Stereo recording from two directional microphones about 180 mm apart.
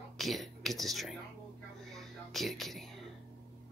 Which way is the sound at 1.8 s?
Centre (ahead or behind).